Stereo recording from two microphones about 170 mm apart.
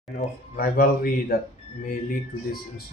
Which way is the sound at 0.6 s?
60° left (ahead or behind).